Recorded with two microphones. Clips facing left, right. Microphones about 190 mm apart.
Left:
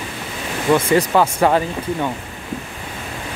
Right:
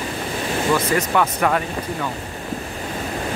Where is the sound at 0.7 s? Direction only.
30° left (ahead or behind).